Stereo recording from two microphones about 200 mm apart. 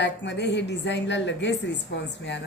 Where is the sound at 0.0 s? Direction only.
60° left (ahead or behind).